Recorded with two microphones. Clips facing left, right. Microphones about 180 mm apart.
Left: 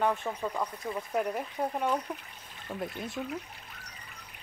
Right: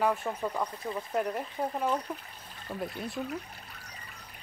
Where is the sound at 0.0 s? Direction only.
Centre (ahead or behind).